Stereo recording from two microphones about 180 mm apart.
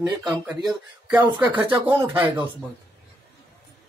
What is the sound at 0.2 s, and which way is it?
Speech, 5° right (ahead or behind).